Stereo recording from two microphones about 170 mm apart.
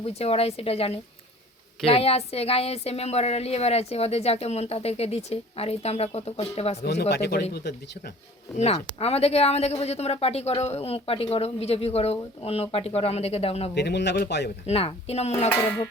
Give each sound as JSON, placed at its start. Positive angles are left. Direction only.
{"t": 0.0, "sound": "a woman's voice", "side_deg": 35}
{"t": 6.8, "sound": "speech", "side_deg": 75}
{"t": 8.5, "sound": "a woman's voice", "side_deg": 40}
{"t": 13.7, "sound": "speech", "side_deg": 80}
{"t": 14.7, "sound": "a woman's voice", "side_deg": 35}
{"t": 15.4, "sound": "music", "side_deg": 10}